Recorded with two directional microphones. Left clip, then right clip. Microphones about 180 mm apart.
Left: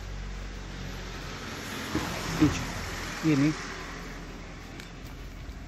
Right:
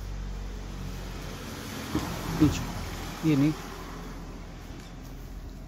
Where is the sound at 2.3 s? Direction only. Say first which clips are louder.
Right 1 dB; 50° right (ahead or behind).